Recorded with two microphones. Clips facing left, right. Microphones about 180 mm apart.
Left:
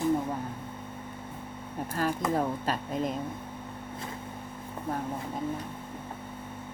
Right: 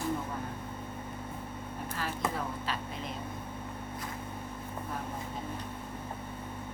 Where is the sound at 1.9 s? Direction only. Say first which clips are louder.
Left 7 dB; 45° left (ahead or behind).